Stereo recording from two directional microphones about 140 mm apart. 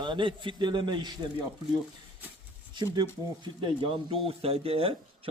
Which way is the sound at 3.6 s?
35° right (ahead or behind).